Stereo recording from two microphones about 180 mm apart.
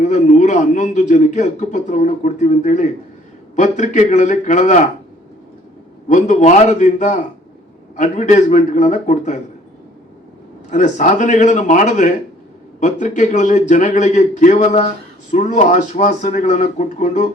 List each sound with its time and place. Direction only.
0.1 s a man's voice: 40° left (ahead or behind)
6.1 s a man's voice: 45° left (ahead or behind)
10.7 s a man's voice: 40° left (ahead or behind)